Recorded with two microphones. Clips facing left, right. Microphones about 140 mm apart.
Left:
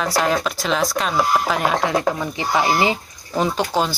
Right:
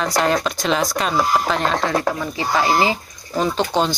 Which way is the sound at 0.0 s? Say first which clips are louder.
Right 1 dB; centre (ahead or behind).